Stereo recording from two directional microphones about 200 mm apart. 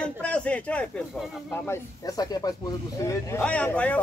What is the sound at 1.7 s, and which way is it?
Speech, 20° left (ahead or behind).